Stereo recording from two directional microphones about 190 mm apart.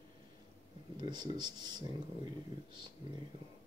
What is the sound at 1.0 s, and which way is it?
Speech, 20° right (ahead or behind).